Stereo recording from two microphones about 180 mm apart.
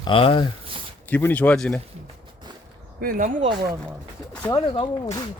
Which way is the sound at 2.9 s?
50° right (ahead or behind).